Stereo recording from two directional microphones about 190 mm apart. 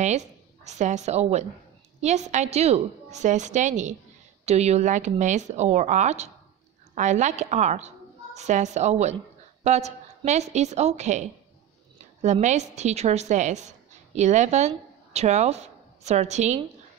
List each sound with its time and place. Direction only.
0.0 s a woman's voice: 35° right (ahead or behind)